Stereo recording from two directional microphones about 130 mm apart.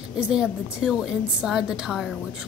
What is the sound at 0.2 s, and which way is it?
A woman's voice, 5° right (ahead or behind).